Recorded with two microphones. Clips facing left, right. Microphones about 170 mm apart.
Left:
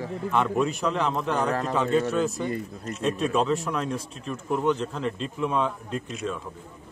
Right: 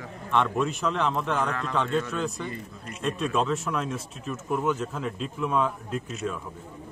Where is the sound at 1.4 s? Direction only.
40° left (ahead or behind).